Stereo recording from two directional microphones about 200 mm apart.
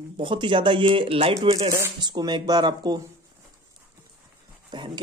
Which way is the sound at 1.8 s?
20° right (ahead or behind).